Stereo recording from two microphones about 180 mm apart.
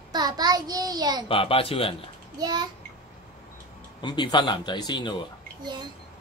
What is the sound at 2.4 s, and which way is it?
Speech, 20° right (ahead or behind).